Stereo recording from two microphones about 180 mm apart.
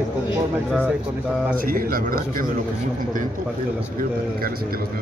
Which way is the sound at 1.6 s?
50° right (ahead or behind).